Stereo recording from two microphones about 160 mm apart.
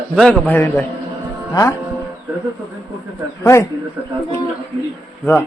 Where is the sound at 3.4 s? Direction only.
20° left (ahead or behind).